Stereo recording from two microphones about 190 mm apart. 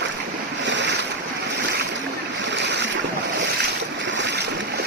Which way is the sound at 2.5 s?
65° right (ahead or behind).